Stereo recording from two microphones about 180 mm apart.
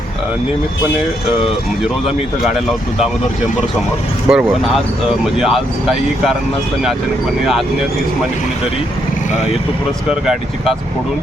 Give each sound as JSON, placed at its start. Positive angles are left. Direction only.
{"t": 4.3, "sound": "speech", "side_deg": -5}